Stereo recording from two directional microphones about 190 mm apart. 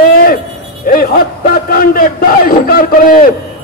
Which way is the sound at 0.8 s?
50° left (ahead or behind).